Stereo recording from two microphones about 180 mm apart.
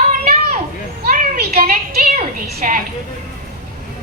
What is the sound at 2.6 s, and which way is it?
Speech, 50° right (ahead or behind).